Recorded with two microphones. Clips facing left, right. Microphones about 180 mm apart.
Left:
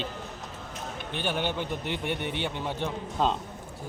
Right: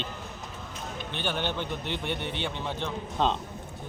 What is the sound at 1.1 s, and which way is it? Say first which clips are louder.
A man's voice: left 2 dB; 5° left (ahead or behind).